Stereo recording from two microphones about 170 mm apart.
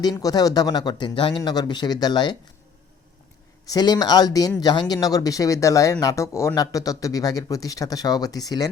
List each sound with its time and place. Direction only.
0.0 s speech: 20° left (ahead or behind)
3.7 s speech: 25° left (ahead or behind)